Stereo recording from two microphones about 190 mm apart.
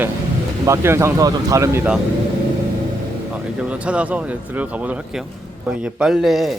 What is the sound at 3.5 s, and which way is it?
Speech, 5° right (ahead or behind).